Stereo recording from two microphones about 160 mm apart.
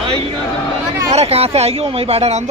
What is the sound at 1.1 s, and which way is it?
Speech, 40° right (ahead or behind).